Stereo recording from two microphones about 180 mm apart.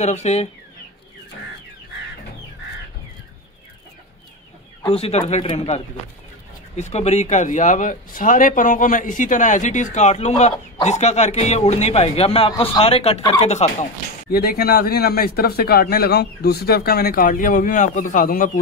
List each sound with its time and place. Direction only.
0.0 s speech: 40° left (ahead or behind)
4.8 s speech: 35° left (ahead or behind)
6.8 s speech: 35° left (ahead or behind)
14.3 s a man's voice: 55° left (ahead or behind)